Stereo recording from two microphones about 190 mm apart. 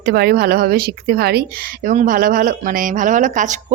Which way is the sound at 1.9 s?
45° right (ahead or behind).